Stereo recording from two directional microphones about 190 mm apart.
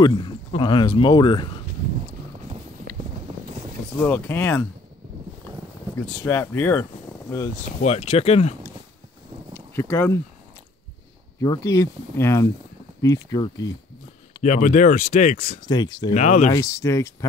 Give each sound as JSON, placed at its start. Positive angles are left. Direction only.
{"t": 0.0, "sound": "speech", "side_deg": 25}
{"t": 4.0, "sound": "speech", "side_deg": 10}
{"t": 6.1, "sound": "speech", "side_deg": 15}
{"t": 7.8, "sound": "speech", "side_deg": 35}
{"t": 9.5, "sound": "speech", "side_deg": 10}
{"t": 11.4, "sound": "speech", "side_deg": 20}
{"t": 14.4, "sound": "speech", "side_deg": 40}
{"t": 15.6, "sound": "speech", "side_deg": 20}
{"t": 16.1, "sound": "speech", "side_deg": 40}
{"t": 16.5, "sound": "speech", "side_deg": 15}